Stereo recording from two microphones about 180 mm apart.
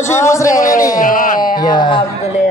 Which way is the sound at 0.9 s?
50° left (ahead or behind).